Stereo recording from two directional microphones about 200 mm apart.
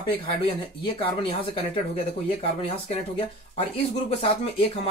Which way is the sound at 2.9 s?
30° left (ahead or behind).